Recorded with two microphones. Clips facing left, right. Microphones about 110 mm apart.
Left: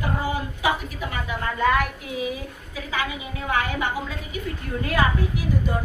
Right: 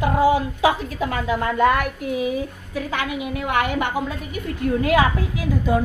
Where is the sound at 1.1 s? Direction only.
65° right (ahead or behind).